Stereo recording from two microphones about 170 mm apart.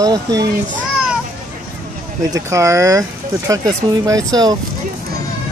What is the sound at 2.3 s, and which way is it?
Speech, 15° right (ahead or behind).